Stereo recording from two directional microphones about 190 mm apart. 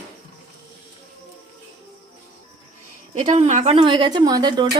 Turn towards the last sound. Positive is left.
turn(degrees=-20)  # may be behind; listen again after turning